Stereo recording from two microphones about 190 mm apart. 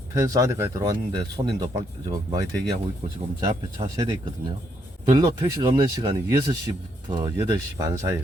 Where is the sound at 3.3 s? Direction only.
25° right (ahead or behind).